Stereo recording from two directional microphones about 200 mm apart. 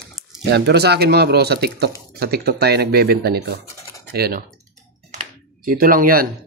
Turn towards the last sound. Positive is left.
turn(degrees=-45)  # may be behind; listen again after turning